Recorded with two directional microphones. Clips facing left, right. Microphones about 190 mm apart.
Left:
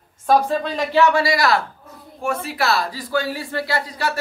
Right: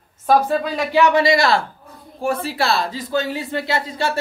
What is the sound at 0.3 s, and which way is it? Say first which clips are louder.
A woman's voice: right 1 dB; 5° right (ahead or behind).